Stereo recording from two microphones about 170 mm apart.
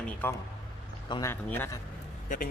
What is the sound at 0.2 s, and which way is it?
Speech, 10° left (ahead or behind).